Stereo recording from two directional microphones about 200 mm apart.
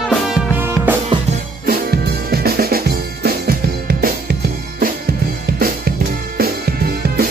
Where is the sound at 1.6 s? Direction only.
50° right (ahead or behind).